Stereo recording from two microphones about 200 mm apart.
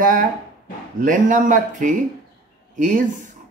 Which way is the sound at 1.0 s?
40° right (ahead or behind).